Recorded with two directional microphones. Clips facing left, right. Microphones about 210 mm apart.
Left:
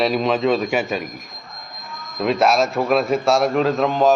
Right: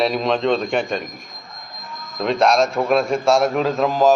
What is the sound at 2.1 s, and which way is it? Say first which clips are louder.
Speech: even; 5° left (ahead or behind).